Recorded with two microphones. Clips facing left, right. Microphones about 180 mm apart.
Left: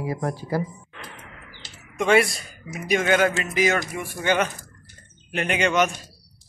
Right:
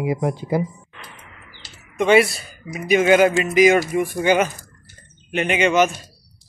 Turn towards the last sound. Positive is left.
turn(degrees=0)  # may be behind; listen again after turning